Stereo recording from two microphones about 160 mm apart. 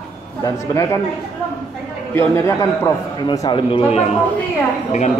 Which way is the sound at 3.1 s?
30° left (ahead or behind).